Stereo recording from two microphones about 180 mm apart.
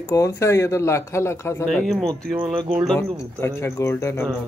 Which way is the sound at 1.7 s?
Centre (ahead or behind).